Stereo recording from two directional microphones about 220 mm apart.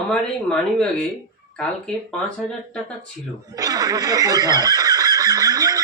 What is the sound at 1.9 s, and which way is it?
Speech, 5° left (ahead or behind).